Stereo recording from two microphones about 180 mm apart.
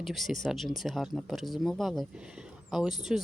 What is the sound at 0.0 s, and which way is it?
A woman's voice, centre (ahead or behind).